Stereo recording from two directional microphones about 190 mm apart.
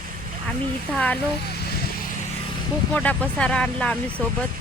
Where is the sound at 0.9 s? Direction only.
5° left (ahead or behind).